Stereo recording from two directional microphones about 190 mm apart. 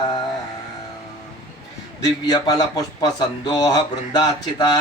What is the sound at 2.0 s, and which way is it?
Speech, 20° left (ahead or behind).